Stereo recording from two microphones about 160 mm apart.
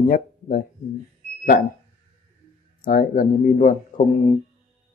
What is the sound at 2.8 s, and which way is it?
Speech, 60° left (ahead or behind).